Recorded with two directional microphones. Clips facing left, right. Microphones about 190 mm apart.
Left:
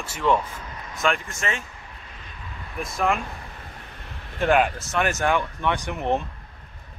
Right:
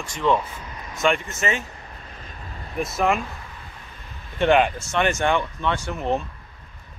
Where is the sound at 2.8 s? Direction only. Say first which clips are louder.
Right 2 dB; 5° right (ahead or behind).